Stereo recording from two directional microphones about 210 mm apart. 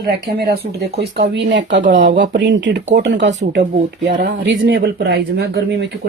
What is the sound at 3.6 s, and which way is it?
Speech, 35° right (ahead or behind).